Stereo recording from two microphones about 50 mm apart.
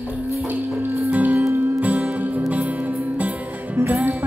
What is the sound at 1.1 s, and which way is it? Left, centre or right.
Music, right.